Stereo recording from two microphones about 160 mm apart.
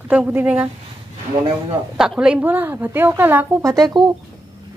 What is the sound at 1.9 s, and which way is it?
Speech, 5° right (ahead or behind).